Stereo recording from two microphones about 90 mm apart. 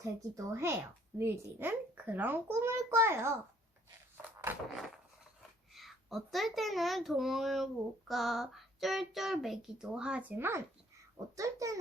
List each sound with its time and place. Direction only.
0.0 s a woman's voice: 35° right (ahead or behind)
4.5 s a woman's voice: 20° right (ahead or behind)
5.7 s a child's voice: centre (ahead or behind)
10.3 s a woman's voice: 25° right (ahead or behind)
11.3 s a child's voice: 35° right (ahead or behind)